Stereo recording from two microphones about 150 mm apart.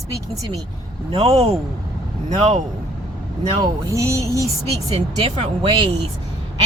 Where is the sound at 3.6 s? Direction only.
20° right (ahead or behind).